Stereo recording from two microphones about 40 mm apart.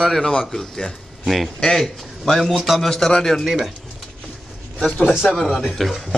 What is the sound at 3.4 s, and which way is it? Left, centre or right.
Speech, centre.